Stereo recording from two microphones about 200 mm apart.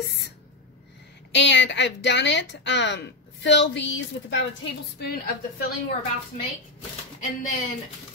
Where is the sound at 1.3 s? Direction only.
60° left (ahead or behind).